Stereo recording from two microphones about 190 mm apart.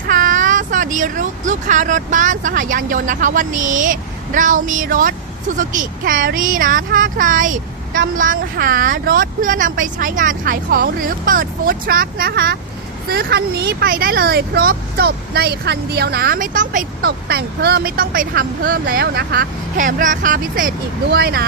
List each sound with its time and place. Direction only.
0.1 s speech: 45° right (ahead or behind)